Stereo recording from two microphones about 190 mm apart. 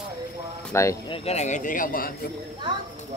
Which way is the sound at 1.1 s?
35° left (ahead or behind).